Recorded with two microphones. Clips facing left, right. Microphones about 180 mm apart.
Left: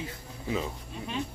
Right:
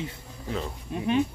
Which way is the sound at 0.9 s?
60° right (ahead or behind).